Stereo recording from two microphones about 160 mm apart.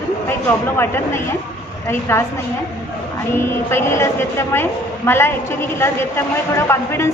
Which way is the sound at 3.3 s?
15° left (ahead or behind).